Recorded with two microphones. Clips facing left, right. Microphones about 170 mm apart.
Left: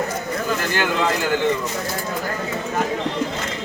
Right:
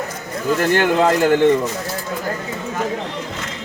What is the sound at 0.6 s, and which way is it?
Speech, 50° right (ahead or behind).